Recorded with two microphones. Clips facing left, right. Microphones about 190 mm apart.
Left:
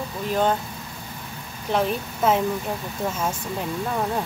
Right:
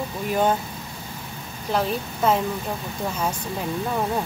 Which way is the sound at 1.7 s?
Centre (ahead or behind).